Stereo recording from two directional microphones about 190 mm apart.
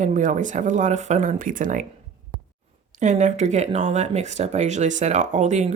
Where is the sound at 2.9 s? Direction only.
40° right (ahead or behind).